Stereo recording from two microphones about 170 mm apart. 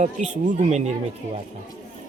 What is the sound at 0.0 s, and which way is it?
Speech, 45° right (ahead or behind).